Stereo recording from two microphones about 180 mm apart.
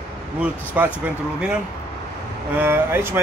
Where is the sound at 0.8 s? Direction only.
10° right (ahead or behind).